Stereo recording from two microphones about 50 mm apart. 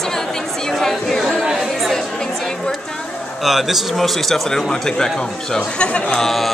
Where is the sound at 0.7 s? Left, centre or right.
Centre.